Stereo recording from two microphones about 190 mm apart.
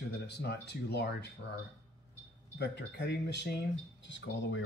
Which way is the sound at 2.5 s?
60° left (ahead or behind).